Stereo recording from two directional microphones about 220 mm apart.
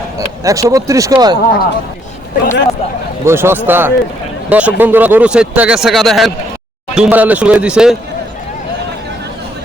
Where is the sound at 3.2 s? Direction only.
10° right (ahead or behind).